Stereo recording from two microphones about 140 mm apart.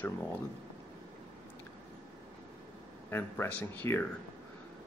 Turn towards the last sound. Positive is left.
turn(degrees=15)  # may be behind; listen again after turning